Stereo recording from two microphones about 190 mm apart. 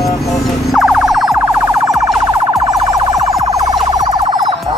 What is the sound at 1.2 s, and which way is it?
Siren, 15° right (ahead or behind).